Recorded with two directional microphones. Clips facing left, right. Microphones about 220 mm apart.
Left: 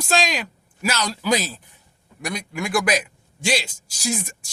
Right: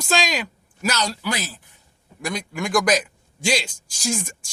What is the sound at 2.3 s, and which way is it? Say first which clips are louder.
Speech: right 2 dB; 5° left (ahead or behind).